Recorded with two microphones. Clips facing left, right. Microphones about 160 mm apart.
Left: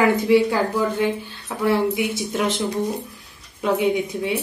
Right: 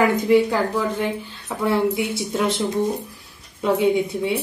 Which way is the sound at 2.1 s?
30° right (ahead or behind).